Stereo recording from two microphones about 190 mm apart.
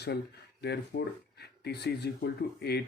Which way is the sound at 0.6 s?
60° left (ahead or behind).